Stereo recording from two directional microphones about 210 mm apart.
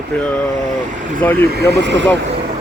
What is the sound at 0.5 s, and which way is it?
Speech, 35° right (ahead or behind).